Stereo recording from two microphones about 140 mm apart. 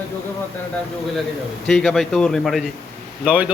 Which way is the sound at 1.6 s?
5° left (ahead or behind).